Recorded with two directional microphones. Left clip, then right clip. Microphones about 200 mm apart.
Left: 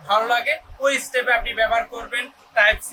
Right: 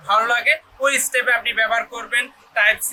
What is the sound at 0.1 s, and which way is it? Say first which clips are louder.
A man's voice: right 3 dB; 15° left (ahead or behind).